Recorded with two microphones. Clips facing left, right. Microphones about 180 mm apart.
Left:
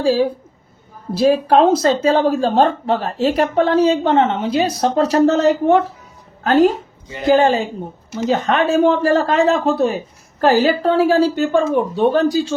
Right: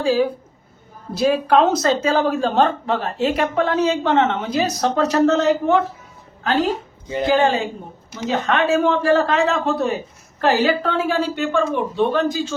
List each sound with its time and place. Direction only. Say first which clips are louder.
0.0 s a woman's voice: left 2 dB; 30° left (ahead or behind)